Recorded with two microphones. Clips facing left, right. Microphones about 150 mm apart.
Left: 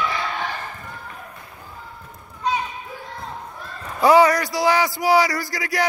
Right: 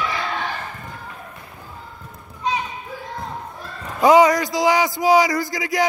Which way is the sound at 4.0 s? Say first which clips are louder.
Right 1 dB; 20° right (ahead or behind).